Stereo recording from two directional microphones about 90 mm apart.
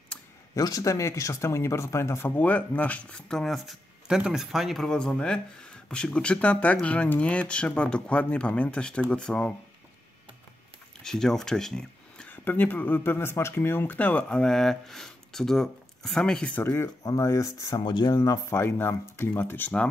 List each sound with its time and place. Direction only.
0.6 s speech: 45° left (ahead or behind); by 4.8 s 5° right (ahead or behind)
4.8 s speech: 10° left (ahead or behind)
11.0 s speech: 5° left (ahead or behind)
12.3 s speech: 20° left (ahead or behind)
16.5 s speech: 30° left (ahead or behind)
17.0 s speech: 40° left (ahead or behind)
17.8 s speech: 55° left (ahead or behind)
18.5 s speech: 25° left (ahead or behind)